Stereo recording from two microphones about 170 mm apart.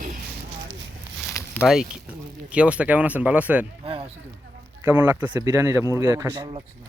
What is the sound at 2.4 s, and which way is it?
Speech, 5° right (ahead or behind).